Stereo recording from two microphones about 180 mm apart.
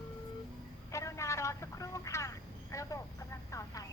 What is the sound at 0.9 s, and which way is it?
Vehicle, 15° left (ahead or behind).